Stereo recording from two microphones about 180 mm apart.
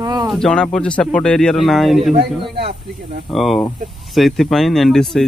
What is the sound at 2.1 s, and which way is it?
Speech, 65° right (ahead or behind).